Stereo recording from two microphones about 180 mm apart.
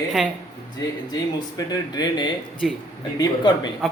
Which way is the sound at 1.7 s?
20° left (ahead or behind).